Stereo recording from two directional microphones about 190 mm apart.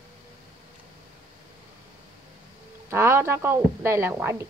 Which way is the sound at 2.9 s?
10° right (ahead or behind).